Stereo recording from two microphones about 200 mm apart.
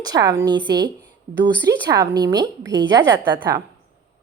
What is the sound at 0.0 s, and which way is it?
Speech, 20° right (ahead or behind).